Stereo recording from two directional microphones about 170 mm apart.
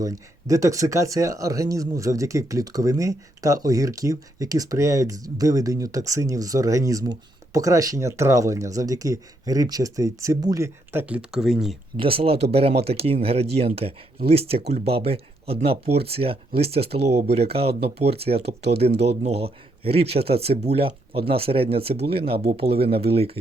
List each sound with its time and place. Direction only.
0.0 s speech: 20° right (ahead or behind); by 11.8 s centre (ahead or behind)
11.9 s speech: 35° right (ahead or behind)
21.9 s speech: 45° right (ahead or behind)